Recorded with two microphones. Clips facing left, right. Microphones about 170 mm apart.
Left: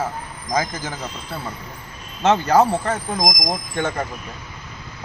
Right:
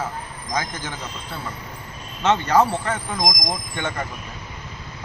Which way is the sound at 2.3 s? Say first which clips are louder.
Left 2 dB; 35° left (ahead or behind).